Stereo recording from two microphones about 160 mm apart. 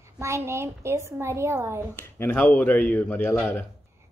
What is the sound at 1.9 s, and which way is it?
A man's voice, 15° left (ahead or behind).